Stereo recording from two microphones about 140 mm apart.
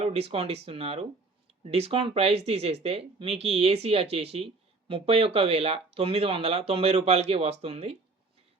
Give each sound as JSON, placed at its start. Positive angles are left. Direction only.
{"t": 0.0, "sound": "speech", "side_deg": -45}